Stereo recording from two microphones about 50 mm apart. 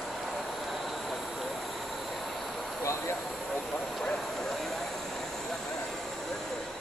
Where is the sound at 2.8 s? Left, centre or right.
Left.